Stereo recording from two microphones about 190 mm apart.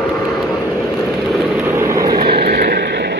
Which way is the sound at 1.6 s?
15° right (ahead or behind).